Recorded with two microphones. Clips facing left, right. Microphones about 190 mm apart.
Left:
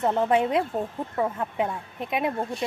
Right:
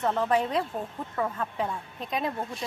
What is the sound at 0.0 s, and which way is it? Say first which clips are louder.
Speech: left 3 dB; 25° left (ahead or behind).